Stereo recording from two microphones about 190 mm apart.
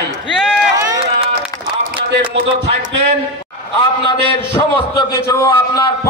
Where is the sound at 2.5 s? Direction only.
30° right (ahead or behind).